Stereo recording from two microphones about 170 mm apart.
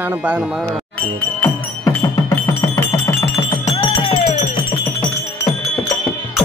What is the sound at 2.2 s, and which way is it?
Music, 20° left (ahead or behind).